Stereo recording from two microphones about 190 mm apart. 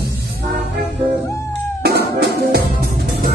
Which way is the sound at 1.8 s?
60° right (ahead or behind).